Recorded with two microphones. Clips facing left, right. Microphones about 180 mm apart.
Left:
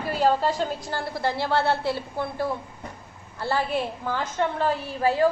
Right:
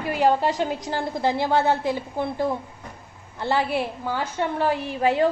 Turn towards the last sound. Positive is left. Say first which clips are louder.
# right 1 dB
turn(degrees=-20)  # may be behind; listen again after turning